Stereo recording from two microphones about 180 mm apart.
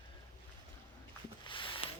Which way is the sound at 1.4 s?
25° left (ahead or behind).